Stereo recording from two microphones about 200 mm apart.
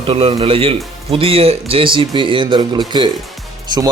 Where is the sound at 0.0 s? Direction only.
30° right (ahead or behind).